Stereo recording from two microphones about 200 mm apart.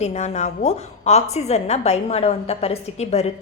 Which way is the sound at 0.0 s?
35° left (ahead or behind).